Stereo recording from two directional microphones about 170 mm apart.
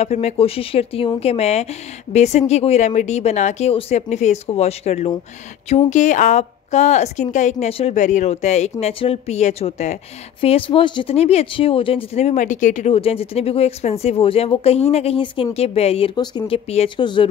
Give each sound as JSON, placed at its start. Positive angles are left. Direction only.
{"t": 0.0, "sound": "speech", "side_deg": 40}